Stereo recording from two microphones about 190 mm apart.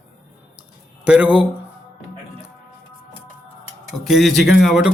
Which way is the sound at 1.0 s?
5° right (ahead or behind).